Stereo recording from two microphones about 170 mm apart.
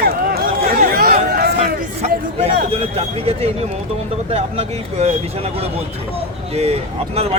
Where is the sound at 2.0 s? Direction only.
40° right (ahead or behind).